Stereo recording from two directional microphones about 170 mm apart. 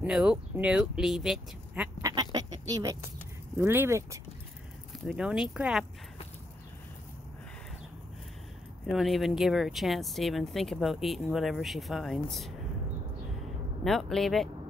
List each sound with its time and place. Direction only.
0.0 s speech: 5° right (ahead or behind)
2.0 s speech: 20° right (ahead or behind)
5.0 s speech: 5° right (ahead or behind)
8.8 s speech: centre (ahead or behind)
13.8 s speech: centre (ahead or behind)